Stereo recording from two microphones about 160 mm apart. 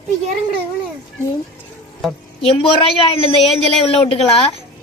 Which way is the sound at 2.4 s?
35° left (ahead or behind).